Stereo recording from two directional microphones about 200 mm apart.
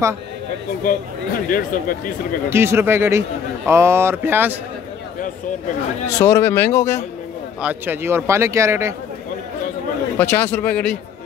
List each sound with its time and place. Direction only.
1.5 s speech: 40° left (ahead or behind)
2.5 s a man's voice: 10° right (ahead or behind)
6.0 s speech: 15° left (ahead or behind)
7.6 s a man's voice: 10° right (ahead or behind)
10.1 s speech: 10° left (ahead or behind)